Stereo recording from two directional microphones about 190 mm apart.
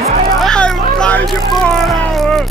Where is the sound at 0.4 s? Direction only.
5° left (ahead or behind).